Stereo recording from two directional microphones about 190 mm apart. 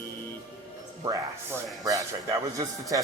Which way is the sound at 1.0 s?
15° right (ahead or behind).